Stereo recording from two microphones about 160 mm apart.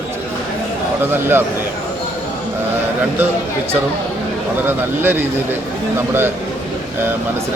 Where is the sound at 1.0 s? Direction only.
15° right (ahead or behind).